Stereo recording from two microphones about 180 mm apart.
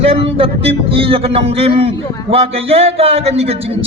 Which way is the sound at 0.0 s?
35° right (ahead or behind).